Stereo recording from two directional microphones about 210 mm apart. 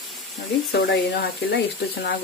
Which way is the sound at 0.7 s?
50° left (ahead or behind).